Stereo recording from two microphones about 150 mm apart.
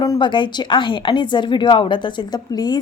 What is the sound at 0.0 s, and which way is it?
Speech, 30° left (ahead or behind).